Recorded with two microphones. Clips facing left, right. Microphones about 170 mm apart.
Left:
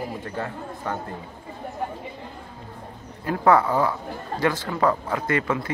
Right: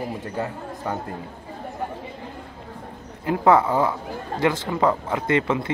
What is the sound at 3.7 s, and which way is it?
Speech, 10° right (ahead or behind).